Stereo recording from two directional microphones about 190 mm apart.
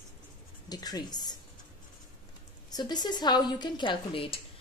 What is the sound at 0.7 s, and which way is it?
Speech, 20° left (ahead or behind).